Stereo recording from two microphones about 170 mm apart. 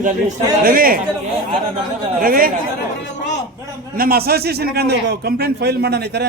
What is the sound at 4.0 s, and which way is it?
A man's voice, 60° right (ahead or behind).